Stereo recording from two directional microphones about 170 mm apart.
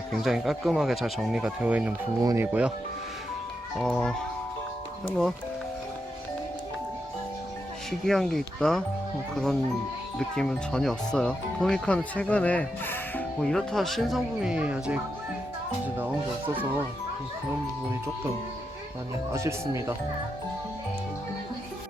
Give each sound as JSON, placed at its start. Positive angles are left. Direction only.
{"t": 0.1, "sound": "speech", "side_deg": 0}
{"t": 3.8, "sound": "speech", "side_deg": 5}
{"t": 7.9, "sound": "speech", "side_deg": 0}
{"t": 16.0, "sound": "speech", "side_deg": -10}
{"t": 19.3, "sound": "speech", "side_deg": -15}